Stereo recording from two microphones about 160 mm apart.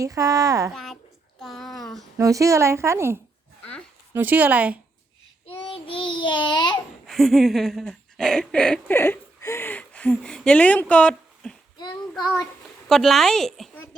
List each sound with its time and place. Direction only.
0.0 s speech: 20° right (ahead or behind)
0.7 s speech: centre (ahead or behind)
1.4 s a sound: centre (ahead or behind)
2.1 s a woman's voice: 20° right (ahead or behind)
5.5 s child singing: 35° left (ahead or behind)
7.1 s a sound: centre (ahead or behind)
12.1 s speech: centre (ahead or behind)